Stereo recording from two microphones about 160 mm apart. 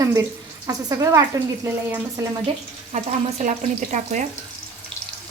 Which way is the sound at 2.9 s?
45° right (ahead or behind).